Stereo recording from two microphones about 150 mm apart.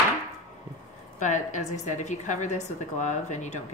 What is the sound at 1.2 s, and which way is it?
A woman's voice, 55° left (ahead or behind).